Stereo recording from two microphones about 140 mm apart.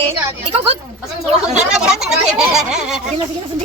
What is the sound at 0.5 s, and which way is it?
Speech, 45° right (ahead or behind).